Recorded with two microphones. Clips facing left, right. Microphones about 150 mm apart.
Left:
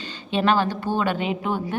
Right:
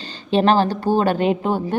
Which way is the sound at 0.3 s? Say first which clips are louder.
Right 5 dB; 35° right (ahead or behind).